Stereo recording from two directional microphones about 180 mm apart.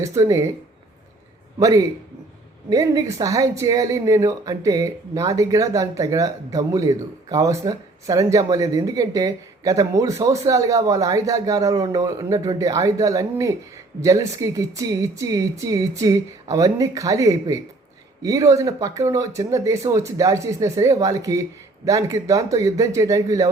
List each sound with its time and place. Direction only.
0.0 s speech: 15° right (ahead or behind)
1.5 s speech: 20° right (ahead or behind)